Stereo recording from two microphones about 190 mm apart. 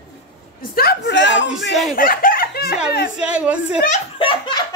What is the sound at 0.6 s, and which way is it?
Speech, 55° left (ahead or behind).